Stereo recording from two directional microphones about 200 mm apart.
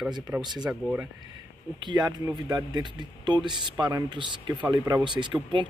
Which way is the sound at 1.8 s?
20° right (ahead or behind).